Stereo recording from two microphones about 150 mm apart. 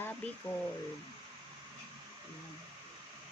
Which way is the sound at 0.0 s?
15° left (ahead or behind).